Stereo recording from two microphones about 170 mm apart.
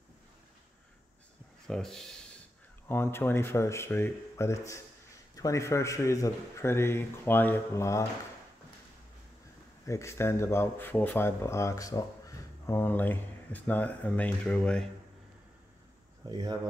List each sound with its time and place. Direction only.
1.7 s speech: 5° left (ahead or behind)
2.9 s a man's voice: 15° left (ahead or behind)
9.8 s a man's voice: 15° left (ahead or behind)
16.3 s speech: 20° right (ahead or behind)